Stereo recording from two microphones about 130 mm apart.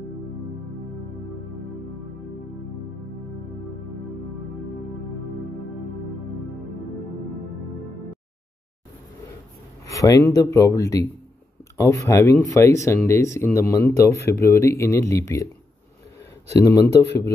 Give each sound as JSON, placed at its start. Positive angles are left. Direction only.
{"t": 9.8, "sound": "speech", "side_deg": 25}
{"t": 16.5, "sound": "speech", "side_deg": 25}